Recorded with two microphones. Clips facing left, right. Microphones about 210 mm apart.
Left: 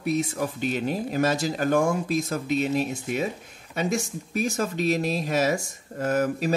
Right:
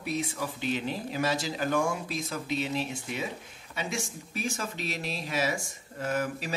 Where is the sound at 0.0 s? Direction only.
50° left (ahead or behind).